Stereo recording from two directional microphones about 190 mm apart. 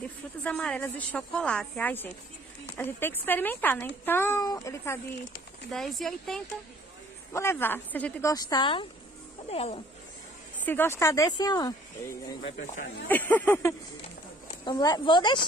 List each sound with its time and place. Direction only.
0.4 s speech: 5° left (ahead or behind)
5.7 s speech: centre (ahead or behind)
7.3 s speech: 15° left (ahead or behind); by 9.8 s 35° left (ahead or behind)
10.6 s speech: 10° left (ahead or behind)
13.1 s speech: 10° left (ahead or behind)